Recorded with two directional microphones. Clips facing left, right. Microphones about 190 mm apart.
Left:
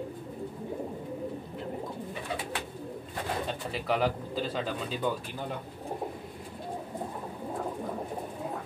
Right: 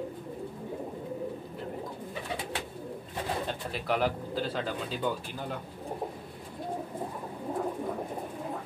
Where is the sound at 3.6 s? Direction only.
Centre (ahead or behind).